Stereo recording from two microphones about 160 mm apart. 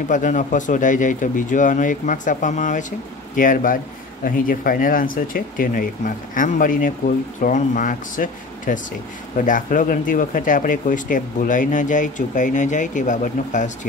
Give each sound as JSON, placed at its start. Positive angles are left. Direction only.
{"t": 0.1, "sound": "speech", "side_deg": 50}